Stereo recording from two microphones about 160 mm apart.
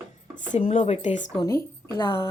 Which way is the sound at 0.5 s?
40° left (ahead or behind).